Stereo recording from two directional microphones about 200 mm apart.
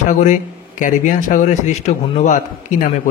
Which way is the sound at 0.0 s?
40° left (ahead or behind).